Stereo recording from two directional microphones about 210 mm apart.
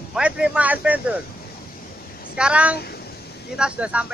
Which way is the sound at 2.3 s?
5° right (ahead or behind).